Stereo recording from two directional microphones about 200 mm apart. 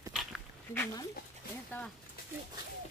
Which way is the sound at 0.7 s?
10° left (ahead or behind).